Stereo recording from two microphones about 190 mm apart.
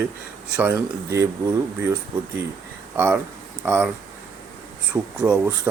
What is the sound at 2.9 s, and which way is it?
Speech, 10° right (ahead or behind).